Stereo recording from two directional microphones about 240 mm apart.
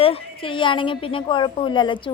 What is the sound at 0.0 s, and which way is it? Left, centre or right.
A woman's voice, left.